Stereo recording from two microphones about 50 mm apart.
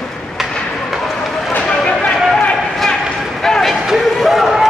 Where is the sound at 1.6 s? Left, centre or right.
Left.